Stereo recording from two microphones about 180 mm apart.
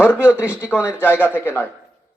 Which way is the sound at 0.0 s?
15° left (ahead or behind).